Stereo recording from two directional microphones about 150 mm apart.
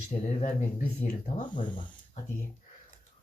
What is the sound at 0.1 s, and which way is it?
Speech, 55° left (ahead or behind).